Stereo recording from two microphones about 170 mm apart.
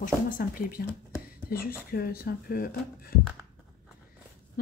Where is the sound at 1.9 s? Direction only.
60° left (ahead or behind).